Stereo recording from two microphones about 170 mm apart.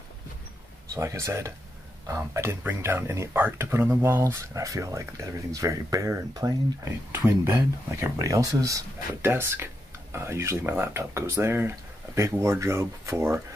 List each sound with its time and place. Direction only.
0.9 s speech: 15° right (ahead or behind)